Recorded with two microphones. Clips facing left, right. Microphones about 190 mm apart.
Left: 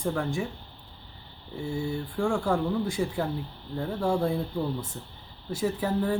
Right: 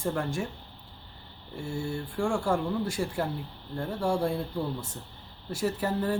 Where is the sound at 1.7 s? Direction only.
5° left (ahead or behind).